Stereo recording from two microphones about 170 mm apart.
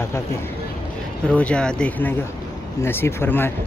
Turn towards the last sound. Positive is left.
turn(degrees=15)  # may be behind; listen again after turning